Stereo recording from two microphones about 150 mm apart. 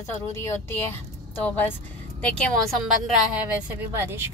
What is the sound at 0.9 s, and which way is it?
Speech, 10° left (ahead or behind).